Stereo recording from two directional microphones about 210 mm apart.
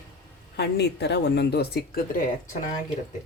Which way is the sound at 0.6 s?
55° left (ahead or behind).